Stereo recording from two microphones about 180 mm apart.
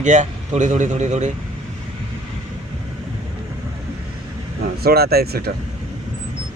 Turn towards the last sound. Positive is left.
turn(degrees=-60)  # may be behind; listen again after turning